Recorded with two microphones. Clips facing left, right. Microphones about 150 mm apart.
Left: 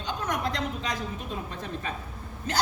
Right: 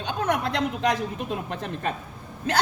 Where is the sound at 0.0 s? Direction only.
60° right (ahead or behind).